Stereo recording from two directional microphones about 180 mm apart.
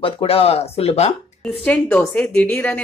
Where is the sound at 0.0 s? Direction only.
30° left (ahead or behind).